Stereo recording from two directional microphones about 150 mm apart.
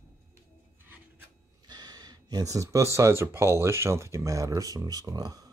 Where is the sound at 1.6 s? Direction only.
30° right (ahead or behind).